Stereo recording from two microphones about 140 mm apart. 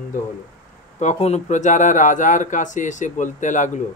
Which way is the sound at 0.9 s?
55° left (ahead or behind).